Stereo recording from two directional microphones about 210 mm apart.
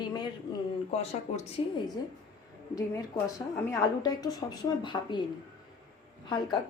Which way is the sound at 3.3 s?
15° left (ahead or behind).